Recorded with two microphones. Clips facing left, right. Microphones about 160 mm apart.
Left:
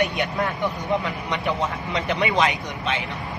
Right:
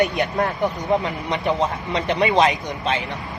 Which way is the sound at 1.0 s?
35° right (ahead or behind).